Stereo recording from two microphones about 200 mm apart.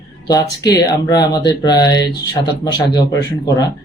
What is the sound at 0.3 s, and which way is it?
Speech, 20° left (ahead or behind).